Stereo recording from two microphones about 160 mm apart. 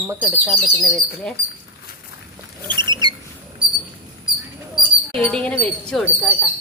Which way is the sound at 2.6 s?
30° right (ahead or behind).